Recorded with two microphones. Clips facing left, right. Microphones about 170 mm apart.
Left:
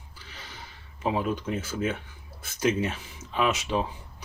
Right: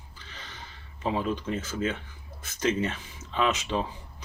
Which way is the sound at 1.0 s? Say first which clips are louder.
Left 1 dB; 5° left (ahead or behind).